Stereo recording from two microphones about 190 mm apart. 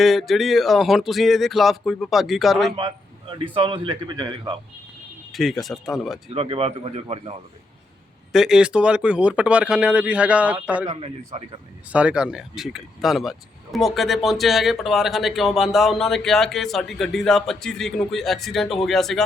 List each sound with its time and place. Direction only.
0.0 s speech: centre (ahead or behind)
2.7 s a man's voice: 25° right (ahead or behind)
5.3 s speech: centre (ahead or behind)
6.3 s speech: 30° right (ahead or behind)
8.3 s speech: centre (ahead or behind)
11.0 s speech: 30° right (ahead or behind)
11.9 s speech: 5° right (ahead or behind)